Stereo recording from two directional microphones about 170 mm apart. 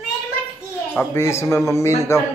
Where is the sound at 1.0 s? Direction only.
15° left (ahead or behind).